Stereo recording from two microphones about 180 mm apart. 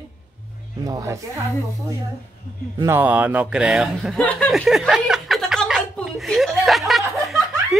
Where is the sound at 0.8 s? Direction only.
15° right (ahead or behind).